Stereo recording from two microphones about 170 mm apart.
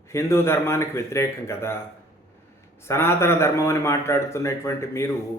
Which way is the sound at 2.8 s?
15° left (ahead or behind).